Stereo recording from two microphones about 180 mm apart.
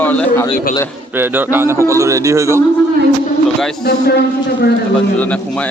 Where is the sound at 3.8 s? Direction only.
65° left (ahead or behind).